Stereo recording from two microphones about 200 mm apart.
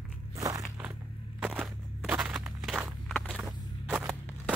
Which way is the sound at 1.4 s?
5° right (ahead or behind).